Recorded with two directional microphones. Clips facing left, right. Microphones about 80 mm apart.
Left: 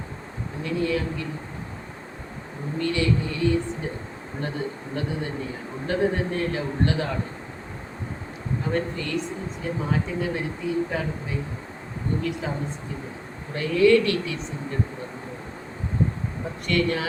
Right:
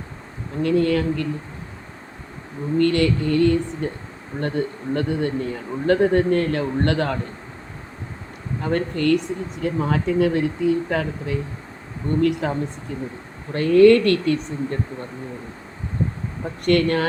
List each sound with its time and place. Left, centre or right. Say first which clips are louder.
0.6 s a man's voice: right 7 dB; right
2.7 s a man's voice: right 6 dB; right
8.7 s a man's voice: right 9 dB; right
13.5 s speech: right 6 dB; right
16.6 s speech: right 6 dB; right